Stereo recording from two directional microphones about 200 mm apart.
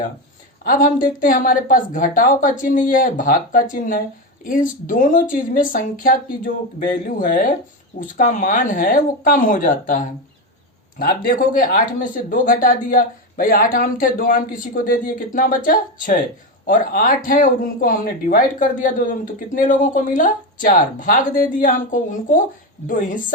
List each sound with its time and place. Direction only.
0.6 s speech: 45° left (ahead or behind)